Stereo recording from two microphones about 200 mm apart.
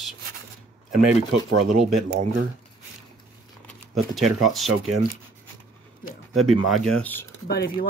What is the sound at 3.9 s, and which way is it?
Speech, centre (ahead or behind).